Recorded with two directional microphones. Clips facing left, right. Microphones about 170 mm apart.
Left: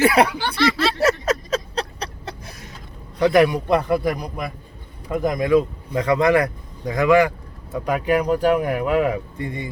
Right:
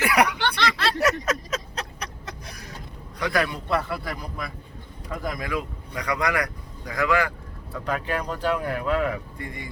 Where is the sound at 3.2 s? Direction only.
20° left (ahead or behind).